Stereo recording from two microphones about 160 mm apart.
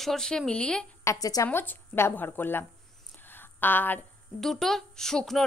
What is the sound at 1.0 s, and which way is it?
Speech, 20° left (ahead or behind).